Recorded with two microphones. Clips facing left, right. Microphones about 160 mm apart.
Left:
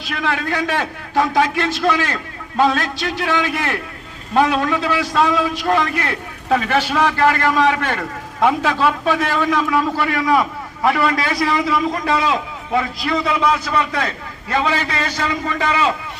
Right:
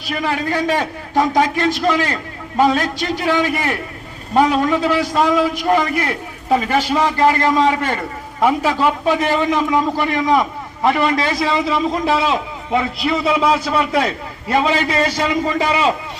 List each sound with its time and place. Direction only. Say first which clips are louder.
0.1 s a man's voice: right 2 dB; 10° right (ahead or behind)
14.5 s a man's voice: right 3 dB; 15° right (ahead or behind)